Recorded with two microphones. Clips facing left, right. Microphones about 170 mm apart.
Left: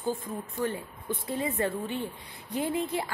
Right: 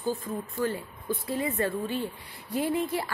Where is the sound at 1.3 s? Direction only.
20° left (ahead or behind).